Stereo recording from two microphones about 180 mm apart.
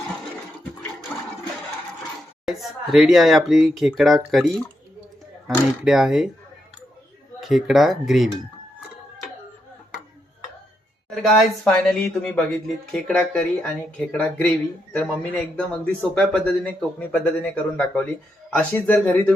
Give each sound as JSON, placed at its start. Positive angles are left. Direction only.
{"t": 1.1, "sound": "toilet flush", "side_deg": 0}
{"t": 2.5, "sound": "speech", "side_deg": 0}
{"t": 5.8, "sound": "speech", "side_deg": 0}
{"t": 7.4, "sound": "speech", "side_deg": 0}
{"t": 11.1, "sound": "speech", "side_deg": 0}